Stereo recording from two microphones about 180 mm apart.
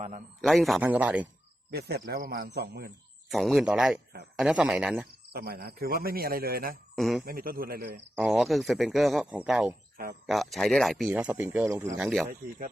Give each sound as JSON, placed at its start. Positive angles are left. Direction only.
{"t": 0.4, "sound": "speech", "side_deg": 0}
{"t": 1.7, "sound": "speech", "side_deg": -65}
{"t": 3.2, "sound": "a man's voice", "side_deg": 0}
{"t": 5.3, "sound": "speech", "side_deg": -60}
{"t": 6.9, "sound": "a man's voice", "side_deg": 0}
{"t": 7.3, "sound": "a man's voice", "side_deg": -55}
{"t": 8.1, "sound": "a man's voice", "side_deg": -5}
{"t": 11.9, "sound": "a man's voice", "side_deg": -5}